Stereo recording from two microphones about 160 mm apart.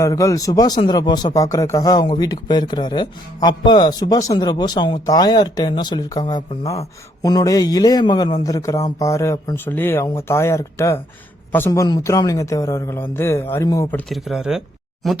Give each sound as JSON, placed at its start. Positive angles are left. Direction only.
{"t": 0.0, "sound": "speech", "side_deg": 20}
{"t": 13.9, "sound": "speech", "side_deg": 0}